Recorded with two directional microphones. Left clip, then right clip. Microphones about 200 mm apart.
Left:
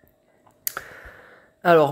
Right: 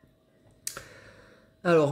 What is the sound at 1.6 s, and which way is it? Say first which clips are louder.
Speech: left 7 dB; centre (ahead or behind).